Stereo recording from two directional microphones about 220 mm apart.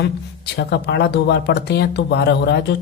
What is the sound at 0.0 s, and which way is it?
Speech, 50° left (ahead or behind).